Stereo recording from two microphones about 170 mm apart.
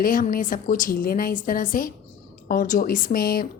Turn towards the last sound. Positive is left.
turn(degrees=60)  # may be behind; listen again after turning